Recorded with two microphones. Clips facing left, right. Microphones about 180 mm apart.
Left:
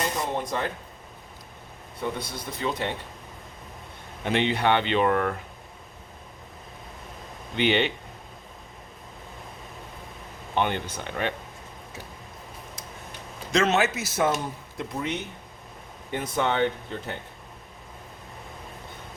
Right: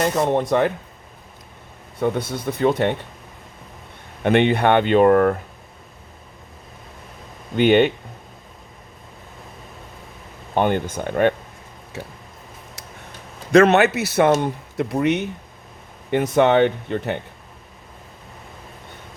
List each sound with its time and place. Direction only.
0.0 s a man's voice: 70° right (ahead or behind)
2.0 s speech: 60° right (ahead or behind)
4.2 s speech: 60° right (ahead or behind)
7.5 s speech: 50° right (ahead or behind)
10.5 s speech: 50° right (ahead or behind)
13.5 s a man's voice: 60° right (ahead or behind)